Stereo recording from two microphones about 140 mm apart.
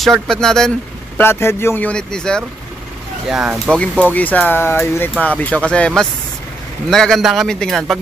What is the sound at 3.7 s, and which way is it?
Speech, 5° left (ahead or behind).